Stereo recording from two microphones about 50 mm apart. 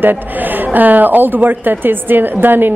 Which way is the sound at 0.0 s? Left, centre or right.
Right.